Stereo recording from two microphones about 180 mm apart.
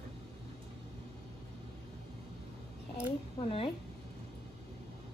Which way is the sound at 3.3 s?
30° left (ahead or behind).